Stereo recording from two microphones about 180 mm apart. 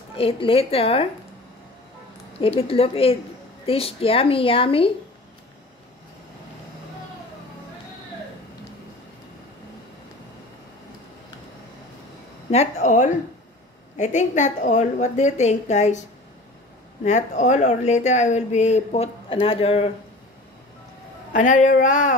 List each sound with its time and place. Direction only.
0.1 s speech: 30° left (ahead or behind)
2.4 s speech: 30° left (ahead or behind)
12.4 s speech: 40° left (ahead or behind)
17.0 s speech: 40° left (ahead or behind)
21.3 s speech: 45° left (ahead or behind)